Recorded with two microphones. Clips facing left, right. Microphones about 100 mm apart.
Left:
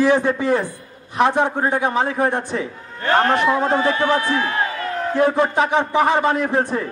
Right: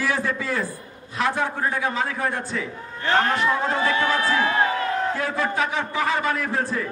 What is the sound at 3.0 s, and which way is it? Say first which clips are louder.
Speech: left 4 dB; 50° left (ahead or behind).